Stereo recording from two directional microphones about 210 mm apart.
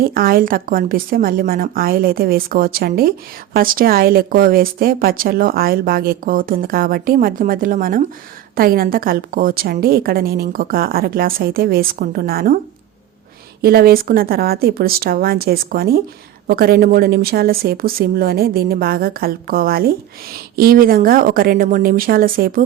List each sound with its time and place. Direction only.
0.0 s a woman's voice: 45° right (ahead or behind)
13.6 s a woman's voice: 45° right (ahead or behind)